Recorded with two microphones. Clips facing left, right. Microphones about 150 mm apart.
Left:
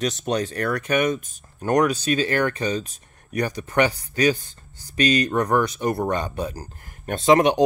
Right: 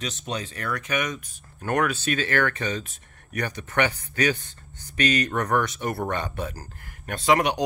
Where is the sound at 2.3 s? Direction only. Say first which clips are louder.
Left 2 dB; 20° left (ahead or behind).